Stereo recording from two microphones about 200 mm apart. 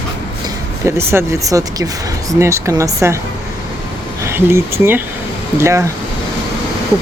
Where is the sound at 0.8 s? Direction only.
10° right (ahead or behind).